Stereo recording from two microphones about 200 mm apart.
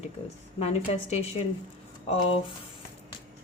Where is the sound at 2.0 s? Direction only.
30° left (ahead or behind).